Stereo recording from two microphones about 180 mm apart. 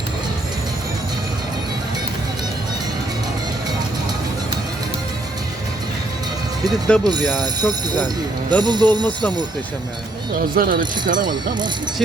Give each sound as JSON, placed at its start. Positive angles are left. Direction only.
{"t": 6.8, "sound": "speech", "side_deg": 5}
{"t": 7.1, "sound": "speech", "side_deg": -20}
{"t": 10.5, "sound": "speech", "side_deg": -50}
{"t": 11.2, "sound": "speech", "side_deg": -25}